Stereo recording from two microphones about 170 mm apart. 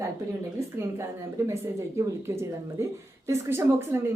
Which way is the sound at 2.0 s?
15° right (ahead or behind).